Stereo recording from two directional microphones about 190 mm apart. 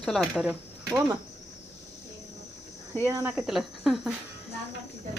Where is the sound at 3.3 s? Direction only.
Centre (ahead or behind).